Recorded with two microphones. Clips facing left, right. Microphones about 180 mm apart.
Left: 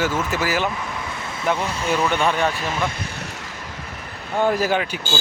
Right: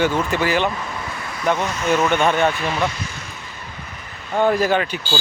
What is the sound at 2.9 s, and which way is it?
Vehicle, 60° left (ahead or behind).